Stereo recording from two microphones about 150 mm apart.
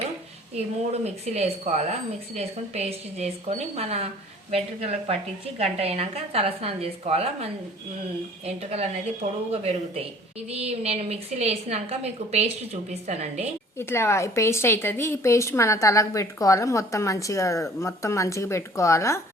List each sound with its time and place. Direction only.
1.0 s a woman's voice: 45° right (ahead or behind)
13.7 s a woman's voice: 15° left (ahead or behind)